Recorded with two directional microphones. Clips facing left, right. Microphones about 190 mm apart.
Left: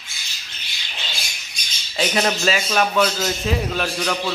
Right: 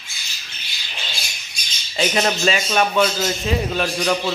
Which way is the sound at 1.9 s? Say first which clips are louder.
Right 1 dB; 5° right (ahead or behind).